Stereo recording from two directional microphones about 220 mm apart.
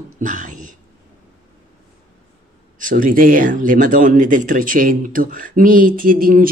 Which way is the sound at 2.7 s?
35° right (ahead or behind).